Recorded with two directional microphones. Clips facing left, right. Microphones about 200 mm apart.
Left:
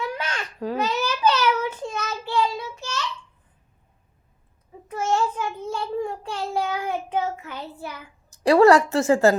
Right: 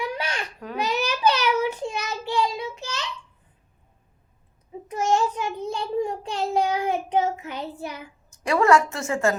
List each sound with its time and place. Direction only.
0.0 s babbling: 15° right (ahead or behind)
0.8 s child singing: 15° right (ahead or behind)
4.9 s child singing: 20° right (ahead or behind)
8.3 s a woman's voice: 35° left (ahead or behind)